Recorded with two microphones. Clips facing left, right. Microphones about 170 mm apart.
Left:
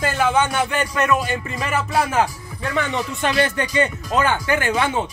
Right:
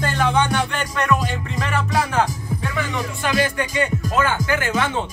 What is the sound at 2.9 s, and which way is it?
Speech, 20° left (ahead or behind).